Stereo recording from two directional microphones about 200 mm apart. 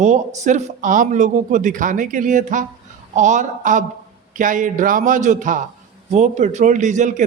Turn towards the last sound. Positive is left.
turn(degrees=-40)  # may be behind; listen again after turning